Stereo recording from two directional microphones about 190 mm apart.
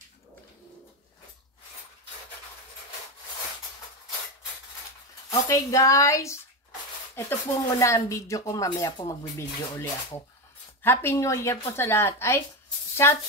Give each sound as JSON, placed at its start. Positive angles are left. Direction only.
{"t": 5.5, "sound": "speech", "side_deg": 15}
{"t": 10.8, "sound": "speech", "side_deg": 10}